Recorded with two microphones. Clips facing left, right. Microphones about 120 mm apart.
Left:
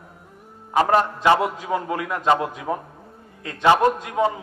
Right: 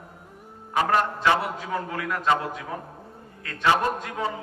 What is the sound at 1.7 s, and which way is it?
Speech, 20° left (ahead or behind).